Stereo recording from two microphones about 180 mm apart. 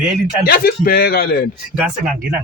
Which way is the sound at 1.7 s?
5° right (ahead or behind).